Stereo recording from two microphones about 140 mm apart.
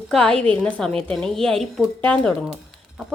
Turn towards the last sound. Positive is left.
turn(degrees=-5)  # may be behind; listen again after turning